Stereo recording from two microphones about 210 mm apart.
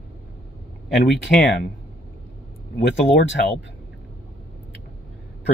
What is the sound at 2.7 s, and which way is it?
Speech, 55° left (ahead or behind).